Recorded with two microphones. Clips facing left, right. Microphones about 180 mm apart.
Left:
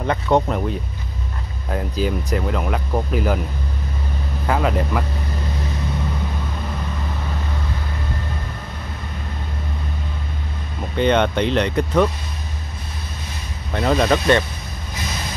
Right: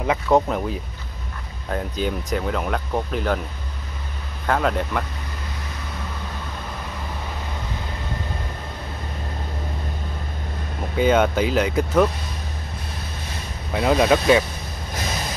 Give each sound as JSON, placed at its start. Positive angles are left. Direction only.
{"t": 0.0, "sound": "speech", "side_deg": -5}
{"t": 4.5, "sound": "speech", "side_deg": 5}
{"t": 11.0, "sound": "speech", "side_deg": -5}
{"t": 13.7, "sound": "speech", "side_deg": -5}